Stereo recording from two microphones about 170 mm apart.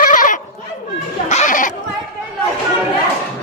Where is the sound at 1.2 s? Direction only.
45° left (ahead or behind).